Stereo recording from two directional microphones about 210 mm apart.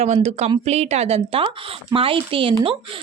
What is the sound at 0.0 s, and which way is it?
A woman's voice, 30° right (ahead or behind).